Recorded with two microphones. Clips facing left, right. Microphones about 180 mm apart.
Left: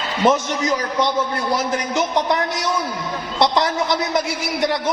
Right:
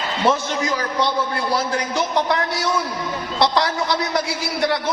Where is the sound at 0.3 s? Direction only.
20° left (ahead or behind).